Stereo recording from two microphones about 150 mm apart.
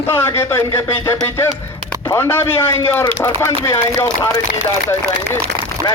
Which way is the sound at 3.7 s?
25° left (ahead or behind).